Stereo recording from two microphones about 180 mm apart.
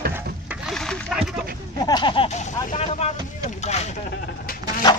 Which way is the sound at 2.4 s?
40° left (ahead or behind).